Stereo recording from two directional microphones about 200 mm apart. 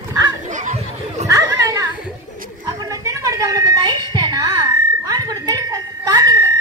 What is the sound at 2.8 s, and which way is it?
Music, 15° right (ahead or behind).